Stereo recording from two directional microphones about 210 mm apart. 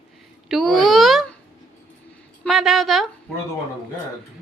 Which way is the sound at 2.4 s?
Centre (ahead or behind).